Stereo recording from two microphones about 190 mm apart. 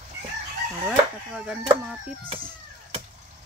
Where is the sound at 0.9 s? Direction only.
5° right (ahead or behind).